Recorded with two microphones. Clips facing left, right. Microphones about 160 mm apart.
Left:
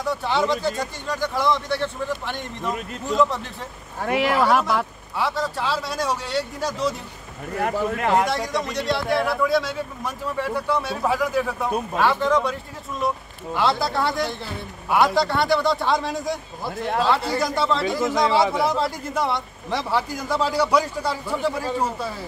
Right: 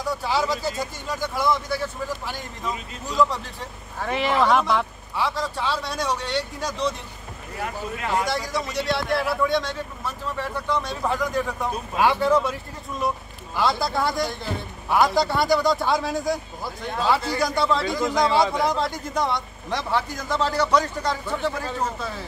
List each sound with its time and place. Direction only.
0.0 s a man's voice: centre (ahead or behind)
4.0 s a man's voice: 10° left (ahead or behind)
7.5 s speech: 55° left (ahead or behind)
8.3 s a man's voice: centre (ahead or behind)
12.0 s a man's voice: 10° right (ahead or behind); by 22.1 s 10° left (ahead or behind)